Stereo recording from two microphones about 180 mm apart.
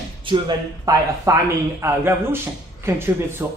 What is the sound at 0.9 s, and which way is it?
Speech, 20° right (ahead or behind).